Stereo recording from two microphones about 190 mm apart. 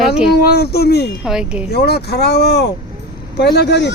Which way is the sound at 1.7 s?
60° left (ahead or behind).